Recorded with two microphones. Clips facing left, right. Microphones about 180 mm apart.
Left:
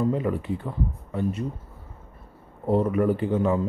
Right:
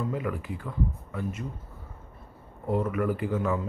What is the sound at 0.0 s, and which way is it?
Speech, 30° left (ahead or behind).